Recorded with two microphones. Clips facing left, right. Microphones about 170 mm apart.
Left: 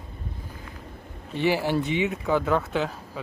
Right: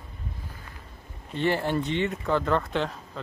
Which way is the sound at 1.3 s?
5° left (ahead or behind).